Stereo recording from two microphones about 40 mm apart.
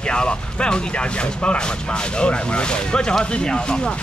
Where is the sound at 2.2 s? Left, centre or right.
Left.